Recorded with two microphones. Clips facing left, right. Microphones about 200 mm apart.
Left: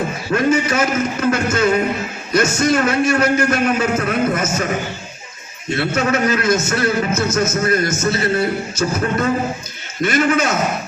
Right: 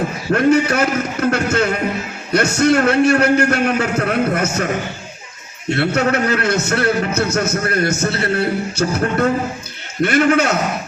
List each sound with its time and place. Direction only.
0.3 s a man's voice: 60° right (ahead or behind)
5.6 s a man's voice: 60° right (ahead or behind)